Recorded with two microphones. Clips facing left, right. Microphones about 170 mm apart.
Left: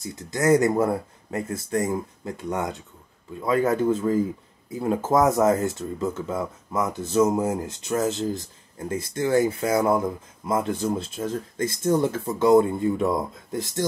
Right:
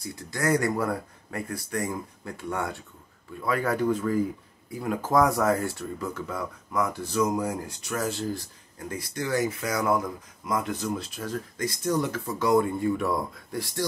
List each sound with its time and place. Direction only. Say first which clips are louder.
0.0 s speech: left 5 dB; 20° left (ahead or behind)